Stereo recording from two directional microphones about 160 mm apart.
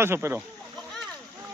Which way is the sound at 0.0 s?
15° right (ahead or behind).